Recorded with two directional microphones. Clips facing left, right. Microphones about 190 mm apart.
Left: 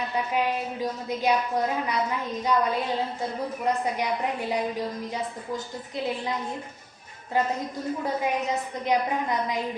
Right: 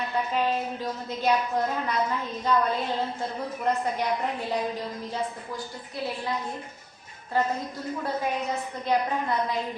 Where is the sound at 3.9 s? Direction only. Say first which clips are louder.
Even; 15° left (ahead or behind).